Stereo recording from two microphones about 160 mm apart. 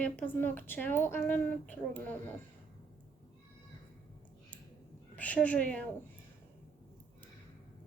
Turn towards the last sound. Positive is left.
turn(degrees=5)  # may be behind; listen again after turning